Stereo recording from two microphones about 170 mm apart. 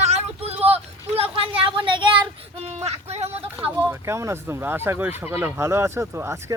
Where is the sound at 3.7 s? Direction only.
10° right (ahead or behind).